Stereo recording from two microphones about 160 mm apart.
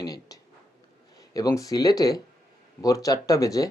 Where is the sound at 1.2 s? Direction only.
20° left (ahead or behind).